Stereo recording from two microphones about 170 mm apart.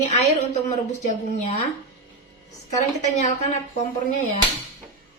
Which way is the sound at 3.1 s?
45° left (ahead or behind).